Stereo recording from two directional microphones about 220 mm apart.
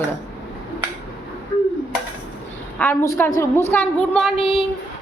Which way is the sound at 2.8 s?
10° left (ahead or behind).